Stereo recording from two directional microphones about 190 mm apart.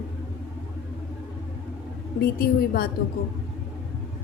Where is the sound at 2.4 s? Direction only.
50° left (ahead or behind).